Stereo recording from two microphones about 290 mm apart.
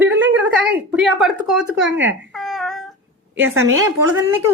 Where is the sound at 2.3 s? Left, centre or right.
Centre.